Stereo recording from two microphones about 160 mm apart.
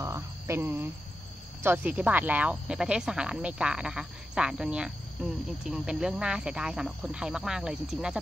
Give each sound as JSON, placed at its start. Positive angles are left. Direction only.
{"t": 0.0, "sound": "cricket", "side_deg": -20}
{"t": 1.6, "sound": "speech", "side_deg": -15}